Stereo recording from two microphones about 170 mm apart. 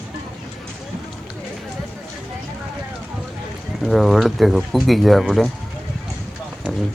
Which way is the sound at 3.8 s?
Centre (ahead or behind).